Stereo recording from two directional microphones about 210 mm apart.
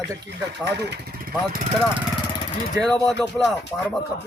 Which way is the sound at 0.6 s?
50° right (ahead or behind).